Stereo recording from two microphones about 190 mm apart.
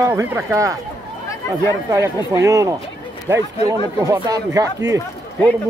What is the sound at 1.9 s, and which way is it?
Speech, 15° right (ahead or behind).